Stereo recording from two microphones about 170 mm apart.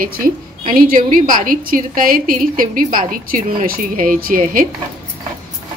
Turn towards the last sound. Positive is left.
turn(degrees=-55)  # may be behind; listen again after turning